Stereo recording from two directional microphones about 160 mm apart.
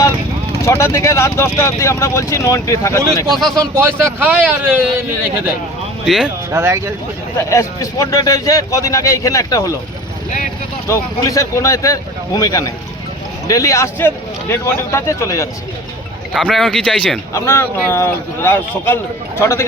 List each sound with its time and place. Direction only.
0.6 s speech: 15° left (ahead or behind)
3.2 s speech: centre (ahead or behind)
3.6 s speech: 15° right (ahead or behind)
6.1 s speech: 5° right (ahead or behind)
6.5 s speech: 15° right (ahead or behind)
7.3 s a man's voice: 20° left (ahead or behind)
10.8 s a man's voice: 20° left (ahead or behind)
16.3 s speech: centre (ahead or behind)
17.3 s speech: 15° left (ahead or behind)